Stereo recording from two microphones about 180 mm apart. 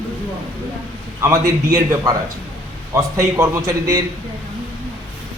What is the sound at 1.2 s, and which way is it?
A man's voice, 15° right (ahead or behind).